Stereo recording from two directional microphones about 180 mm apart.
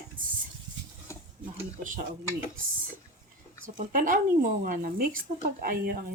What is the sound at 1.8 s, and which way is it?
Speech, 45° right (ahead or behind).